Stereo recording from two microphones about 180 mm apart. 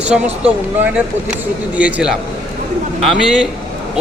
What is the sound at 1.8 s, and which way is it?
A man's voice, 5° right (ahead or behind).